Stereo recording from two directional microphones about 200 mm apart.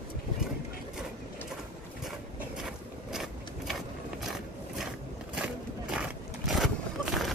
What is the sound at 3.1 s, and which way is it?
Vehicle, centre (ahead or behind).